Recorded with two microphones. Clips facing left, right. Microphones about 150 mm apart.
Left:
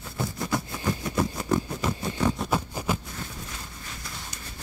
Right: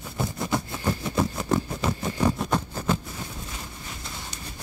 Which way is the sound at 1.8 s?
30° right (ahead or behind).